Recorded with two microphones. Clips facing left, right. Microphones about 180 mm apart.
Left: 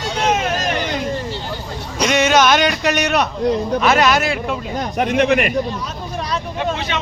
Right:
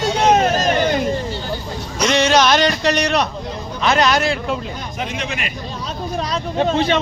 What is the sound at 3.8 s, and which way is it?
Speech, 5° left (ahead or behind).